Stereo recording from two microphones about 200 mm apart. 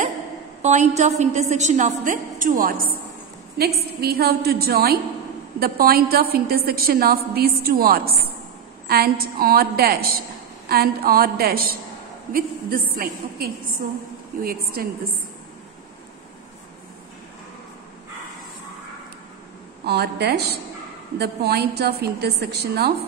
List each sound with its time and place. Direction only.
0.6 s a woman's voice: 35° right (ahead or behind)
19.8 s a woman's voice: 55° right (ahead or behind)